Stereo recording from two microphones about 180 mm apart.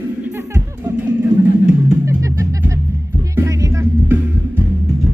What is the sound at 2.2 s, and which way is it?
Music, 15° right (ahead or behind).